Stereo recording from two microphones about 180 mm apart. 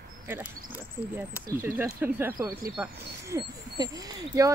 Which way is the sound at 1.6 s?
10° right (ahead or behind).